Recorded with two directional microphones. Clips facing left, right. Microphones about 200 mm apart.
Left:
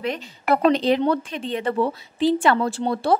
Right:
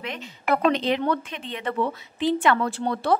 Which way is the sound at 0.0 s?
35° left (ahead or behind).